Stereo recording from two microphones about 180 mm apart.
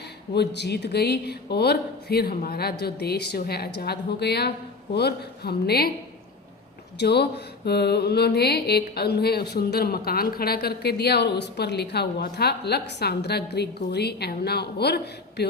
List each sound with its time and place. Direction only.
0.3 s mantra: 70° left (ahead or behind)
7.0 s mantra: 65° left (ahead or behind)